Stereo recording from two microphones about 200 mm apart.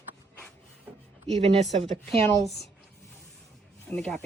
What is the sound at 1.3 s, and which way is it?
Speech, 30° right (ahead or behind).